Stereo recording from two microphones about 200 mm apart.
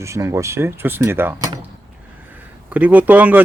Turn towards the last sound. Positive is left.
turn(degrees=-10)  # may be behind; listen again after turning